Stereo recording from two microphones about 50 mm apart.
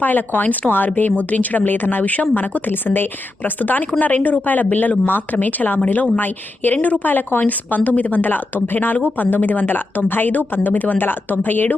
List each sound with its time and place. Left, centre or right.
0.0 s speech: left